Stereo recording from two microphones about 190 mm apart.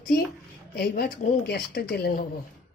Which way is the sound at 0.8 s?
50° left (ahead or behind).